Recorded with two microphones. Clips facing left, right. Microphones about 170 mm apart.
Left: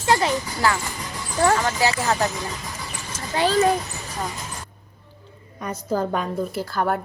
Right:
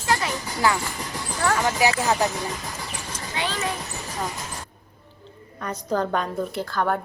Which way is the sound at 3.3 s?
40° left (ahead or behind).